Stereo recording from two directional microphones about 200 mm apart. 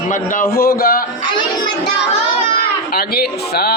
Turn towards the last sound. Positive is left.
turn(degrees=50)  # may be behind; listen again after turning